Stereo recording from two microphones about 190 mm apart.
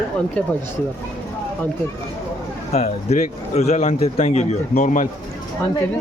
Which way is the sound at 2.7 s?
35° left (ahead or behind).